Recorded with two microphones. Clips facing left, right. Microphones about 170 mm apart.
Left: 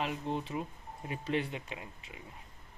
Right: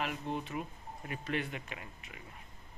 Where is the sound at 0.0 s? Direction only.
30° left (ahead or behind).